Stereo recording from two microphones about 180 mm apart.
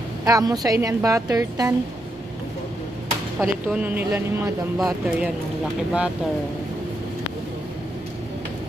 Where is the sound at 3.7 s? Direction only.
10° right (ahead or behind).